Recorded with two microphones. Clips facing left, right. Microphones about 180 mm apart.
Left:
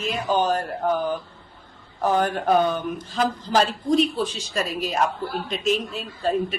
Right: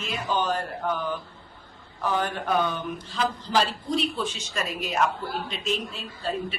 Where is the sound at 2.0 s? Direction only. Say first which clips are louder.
Left 6 dB; 45° left (ahead or behind).